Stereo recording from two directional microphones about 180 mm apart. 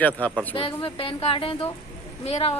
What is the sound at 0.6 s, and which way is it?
A woman's voice, 30° left (ahead or behind).